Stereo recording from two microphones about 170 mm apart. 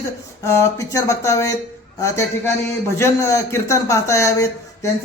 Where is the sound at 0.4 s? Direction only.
15° left (ahead or behind).